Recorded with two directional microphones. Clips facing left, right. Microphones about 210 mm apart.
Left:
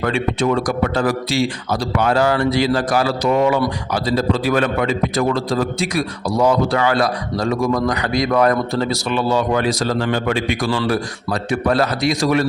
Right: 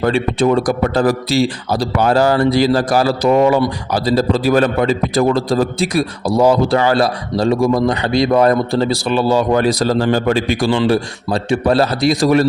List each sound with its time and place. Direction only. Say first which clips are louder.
0.0 s a man's voice: right 4 dB; 35° right (ahead or behind)